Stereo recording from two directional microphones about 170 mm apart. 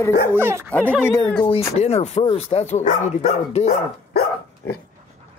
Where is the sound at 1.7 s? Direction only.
40° left (ahead or behind).